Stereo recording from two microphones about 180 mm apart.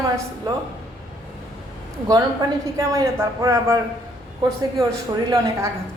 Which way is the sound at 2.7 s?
15° right (ahead or behind).